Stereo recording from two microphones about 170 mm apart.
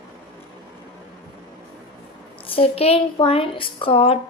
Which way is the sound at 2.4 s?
30° left (ahead or behind).